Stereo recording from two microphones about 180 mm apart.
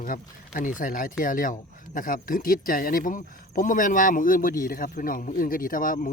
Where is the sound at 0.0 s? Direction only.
50° left (ahead or behind).